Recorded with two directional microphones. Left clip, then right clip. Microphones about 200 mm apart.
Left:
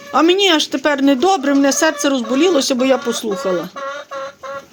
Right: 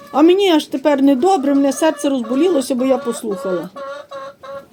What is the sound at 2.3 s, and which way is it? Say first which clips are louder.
Speech: left 2 dB; 15° right (ahead or behind).